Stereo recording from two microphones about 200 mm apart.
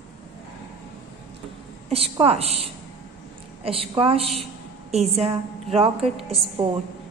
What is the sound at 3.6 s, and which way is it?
A woman's voice, 30° right (ahead or behind).